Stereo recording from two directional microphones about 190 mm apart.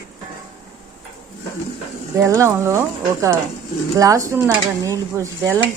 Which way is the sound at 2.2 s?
15° right (ahead or behind).